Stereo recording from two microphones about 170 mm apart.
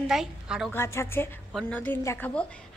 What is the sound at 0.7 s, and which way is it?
Speech, 15° left (ahead or behind).